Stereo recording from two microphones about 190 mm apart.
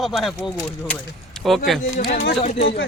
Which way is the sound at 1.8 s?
40° left (ahead or behind).